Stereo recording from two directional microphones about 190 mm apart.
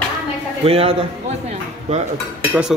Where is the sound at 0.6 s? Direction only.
30° right (ahead or behind).